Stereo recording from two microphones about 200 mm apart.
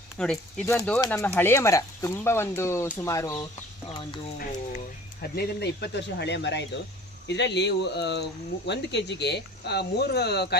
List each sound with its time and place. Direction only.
0.2 s speech: 5° left (ahead or behind)
5.3 s speech: 55° left (ahead or behind)